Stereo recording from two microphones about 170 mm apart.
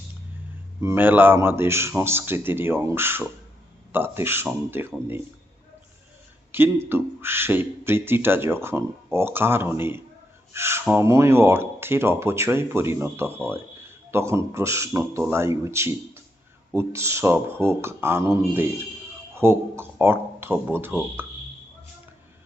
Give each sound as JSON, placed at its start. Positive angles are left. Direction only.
{"t": 0.8, "sound": "speech", "side_deg": -15}
{"t": 6.5, "sound": "speech", "side_deg": -15}